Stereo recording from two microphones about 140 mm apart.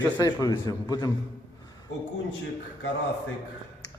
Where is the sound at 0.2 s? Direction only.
25° left (ahead or behind).